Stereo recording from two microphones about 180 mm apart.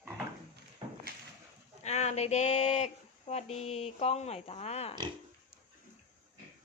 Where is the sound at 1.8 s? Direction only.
40° left (ahead or behind).